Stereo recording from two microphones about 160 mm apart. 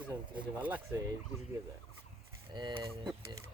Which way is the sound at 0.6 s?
10° right (ahead or behind).